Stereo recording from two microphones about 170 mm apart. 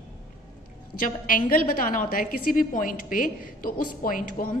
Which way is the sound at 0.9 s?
55° left (ahead or behind).